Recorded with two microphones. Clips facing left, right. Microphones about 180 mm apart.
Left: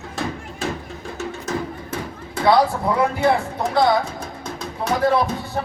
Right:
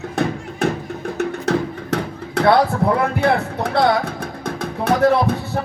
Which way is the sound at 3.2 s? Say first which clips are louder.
Right 1 dB; 65° right (ahead or behind).